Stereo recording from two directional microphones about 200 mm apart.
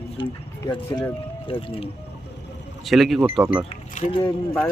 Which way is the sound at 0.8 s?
10° left (ahead or behind).